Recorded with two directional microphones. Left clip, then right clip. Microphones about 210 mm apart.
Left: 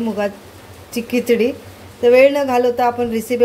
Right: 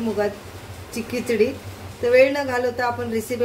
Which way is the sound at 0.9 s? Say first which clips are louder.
Left 7 dB; 30° left (ahead or behind).